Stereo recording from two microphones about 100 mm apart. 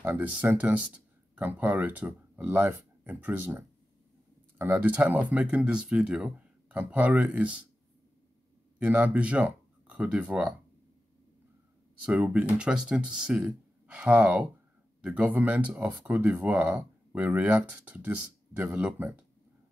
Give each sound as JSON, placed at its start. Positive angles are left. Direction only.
{"t": 0.0, "sound": "speech", "side_deg": -20}
{"t": 8.7, "sound": "speech", "side_deg": -15}
{"t": 12.0, "sound": "speech", "side_deg": -15}